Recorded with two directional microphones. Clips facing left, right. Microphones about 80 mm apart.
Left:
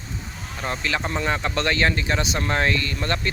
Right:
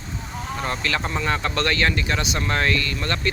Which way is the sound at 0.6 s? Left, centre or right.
Centre.